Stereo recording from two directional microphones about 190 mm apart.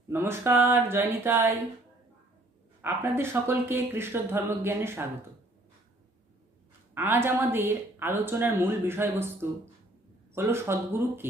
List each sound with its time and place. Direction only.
0.1 s speech: 10° right (ahead or behind)
2.8 s speech: 15° right (ahead or behind)
6.9 s speech: 10° right (ahead or behind)